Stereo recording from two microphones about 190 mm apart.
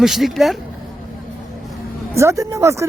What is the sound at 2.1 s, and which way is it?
Speech, 15° right (ahead or behind).